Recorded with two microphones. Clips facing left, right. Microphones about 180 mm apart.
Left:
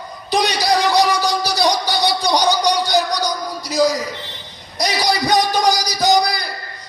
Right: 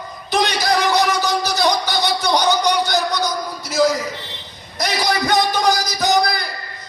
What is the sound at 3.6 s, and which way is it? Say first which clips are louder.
Speech: even; 15° left (ahead or behind).